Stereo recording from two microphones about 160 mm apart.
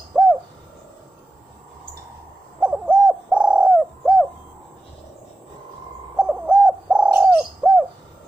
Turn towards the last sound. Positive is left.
turn(degrees=-10)  # may be behind; listen again after turning